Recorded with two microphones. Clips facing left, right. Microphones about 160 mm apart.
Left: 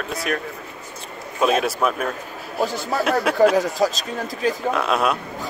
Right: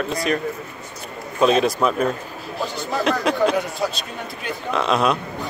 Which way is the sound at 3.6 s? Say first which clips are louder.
Left 4 dB; 40° left (ahead or behind).